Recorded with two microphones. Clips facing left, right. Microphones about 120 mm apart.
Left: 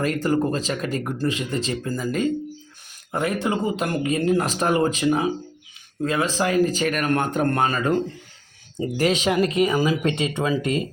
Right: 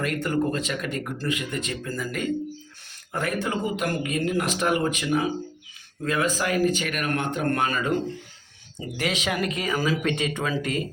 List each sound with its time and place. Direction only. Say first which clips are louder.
0.0 s speech: left 3 dB; 30° left (ahead or behind)
7.5 s speech: left 3 dB; 35° left (ahead or behind)
9.0 s speech: left 6 dB; 35° left (ahead or behind)